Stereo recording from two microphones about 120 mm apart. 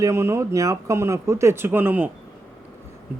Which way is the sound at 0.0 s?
25° right (ahead or behind).